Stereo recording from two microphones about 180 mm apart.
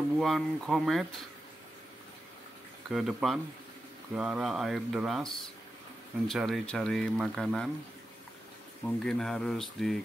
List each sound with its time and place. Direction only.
0.2 s speech: centre (ahead or behind)
2.9 s speech: centre (ahead or behind)
8.8 s speech: 5° left (ahead or behind)